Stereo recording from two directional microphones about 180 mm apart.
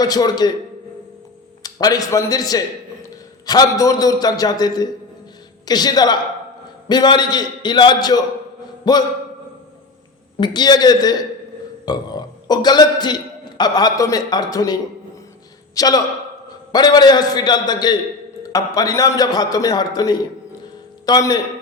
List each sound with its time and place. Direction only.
0.0 s a man's voice: 20° left (ahead or behind)
1.6 s a man's voice: 20° left (ahead or behind)
8.8 s mantra: 25° left (ahead or behind)
10.4 s a man's voice: 25° left (ahead or behind)